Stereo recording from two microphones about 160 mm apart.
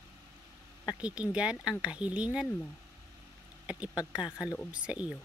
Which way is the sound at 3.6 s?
5° right (ahead or behind).